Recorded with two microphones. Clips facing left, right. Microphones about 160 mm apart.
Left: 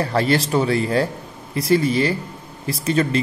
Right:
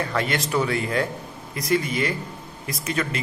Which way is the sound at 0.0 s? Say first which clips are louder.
Left 6 dB; 35° left (ahead or behind).